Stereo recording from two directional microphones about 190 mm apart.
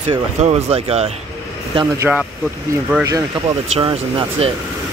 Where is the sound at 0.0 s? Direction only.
35° right (ahead or behind).